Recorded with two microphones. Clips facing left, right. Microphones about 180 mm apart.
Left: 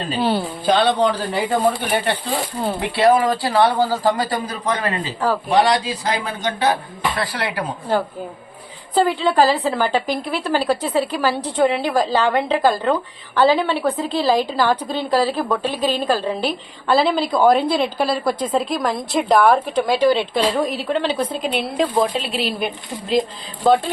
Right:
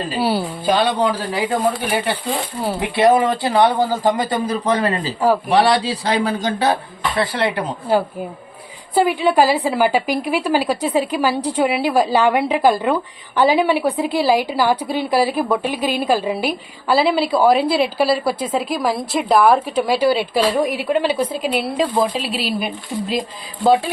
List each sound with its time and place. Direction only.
0.0 s a woman's voice: 5° right (ahead or behind)
2.9 s a man's voice: 20° right (ahead or behind)
7.2 s a man's voice: 25° right (ahead or behind)
9.0 s a woman's voice: 10° right (ahead or behind)